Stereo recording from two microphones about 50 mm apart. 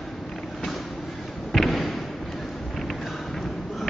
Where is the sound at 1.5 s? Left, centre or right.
Centre.